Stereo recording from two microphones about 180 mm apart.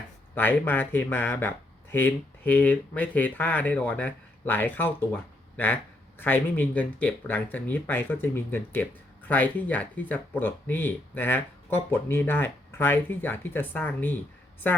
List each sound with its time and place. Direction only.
0.3 s speech: 10° left (ahead or behind)